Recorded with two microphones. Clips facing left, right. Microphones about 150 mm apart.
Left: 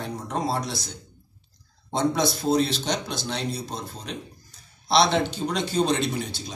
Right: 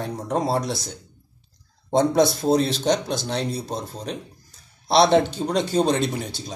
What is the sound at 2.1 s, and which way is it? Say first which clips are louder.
A man's voice: right 4 dB; 45° right (ahead or behind).